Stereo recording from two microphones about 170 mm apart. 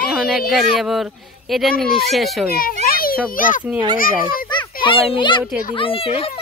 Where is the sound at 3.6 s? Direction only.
5° right (ahead or behind).